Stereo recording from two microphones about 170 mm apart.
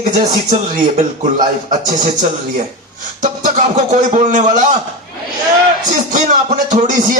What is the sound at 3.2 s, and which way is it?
A man's voice, 50° right (ahead or behind).